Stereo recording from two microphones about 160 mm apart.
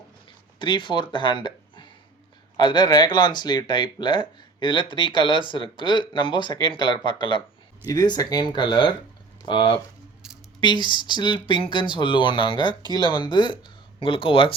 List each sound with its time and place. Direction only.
0.6 s speech: 30° left (ahead or behind)
10.2 s squish: 5° right (ahead or behind)
10.6 s speech: 30° left (ahead or behind)